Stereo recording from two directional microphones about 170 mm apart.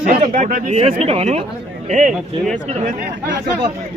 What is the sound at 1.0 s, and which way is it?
Speech, 35° right (ahead or behind).